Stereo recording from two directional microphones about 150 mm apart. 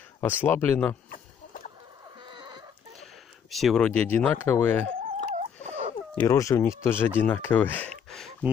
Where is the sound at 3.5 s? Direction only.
Centre (ahead or behind).